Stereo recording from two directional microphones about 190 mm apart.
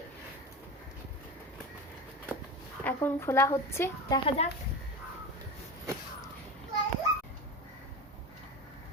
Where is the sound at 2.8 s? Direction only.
10° left (ahead or behind).